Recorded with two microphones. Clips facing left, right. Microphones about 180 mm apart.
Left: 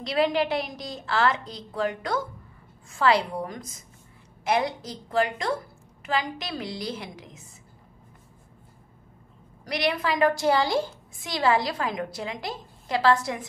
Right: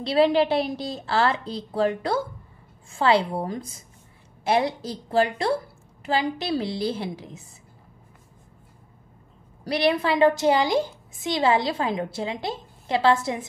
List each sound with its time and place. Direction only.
0.0 s a woman's voice: 30° right (ahead or behind)
9.7 s a woman's voice: 30° right (ahead or behind)